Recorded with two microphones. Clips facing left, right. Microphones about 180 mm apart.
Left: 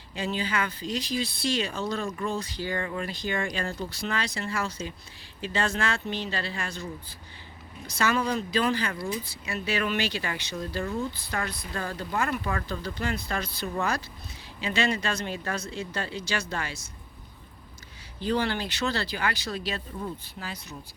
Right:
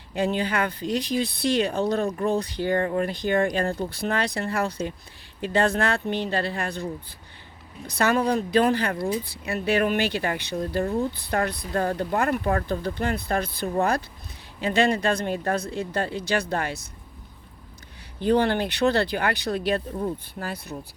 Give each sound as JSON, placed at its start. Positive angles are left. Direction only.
{"t": 0.1, "sound": "speech", "side_deg": -55}
{"t": 7.9, "sound": "speech", "side_deg": -55}
{"t": 18.2, "sound": "speech", "side_deg": -55}